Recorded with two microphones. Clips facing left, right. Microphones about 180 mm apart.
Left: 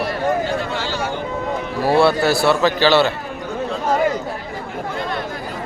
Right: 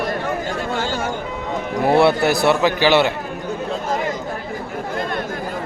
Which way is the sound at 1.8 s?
20° right (ahead or behind).